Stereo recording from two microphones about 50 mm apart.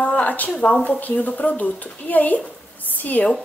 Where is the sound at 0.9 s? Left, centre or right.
Left.